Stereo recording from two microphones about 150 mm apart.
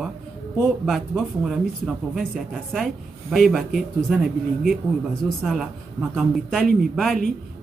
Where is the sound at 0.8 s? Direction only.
Centre (ahead or behind).